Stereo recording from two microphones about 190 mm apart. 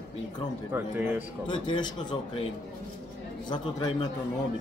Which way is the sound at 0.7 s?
10° right (ahead or behind).